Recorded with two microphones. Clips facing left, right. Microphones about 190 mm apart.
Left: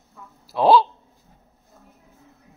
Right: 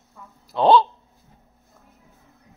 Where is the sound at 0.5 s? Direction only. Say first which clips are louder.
Even; 5° left (ahead or behind).